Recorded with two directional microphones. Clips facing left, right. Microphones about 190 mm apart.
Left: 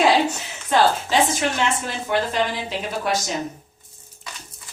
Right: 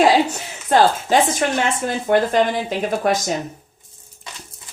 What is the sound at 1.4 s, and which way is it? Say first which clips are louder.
Speech: right 3 dB; 50° right (ahead or behind).